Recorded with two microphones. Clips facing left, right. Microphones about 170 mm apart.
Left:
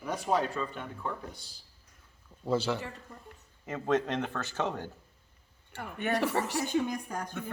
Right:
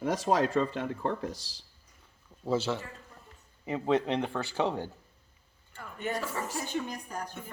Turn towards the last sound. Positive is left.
turn(degrees=50)  # may be behind; listen again after turning